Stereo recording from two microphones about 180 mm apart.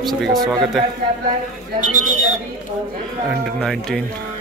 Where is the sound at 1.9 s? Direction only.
45° right (ahead or behind).